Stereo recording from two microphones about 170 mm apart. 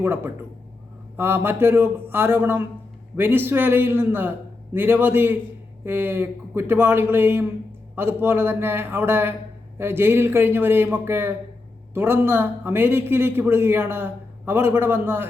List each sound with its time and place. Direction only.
1.1 s a man's voice: 15° right (ahead or behind)